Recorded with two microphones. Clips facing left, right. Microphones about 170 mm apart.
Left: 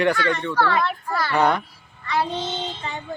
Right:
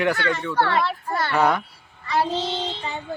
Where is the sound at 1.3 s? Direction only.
5° right (ahead or behind).